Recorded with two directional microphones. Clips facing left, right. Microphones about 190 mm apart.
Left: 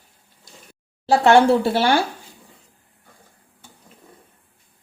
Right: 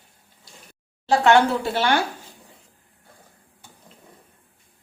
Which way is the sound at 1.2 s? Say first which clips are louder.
Left 4 dB; 35° left (ahead or behind).